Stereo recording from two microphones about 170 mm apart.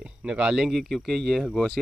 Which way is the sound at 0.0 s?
5° right (ahead or behind).